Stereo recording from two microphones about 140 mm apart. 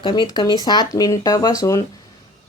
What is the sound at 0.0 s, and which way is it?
Speech, 35° left (ahead or behind).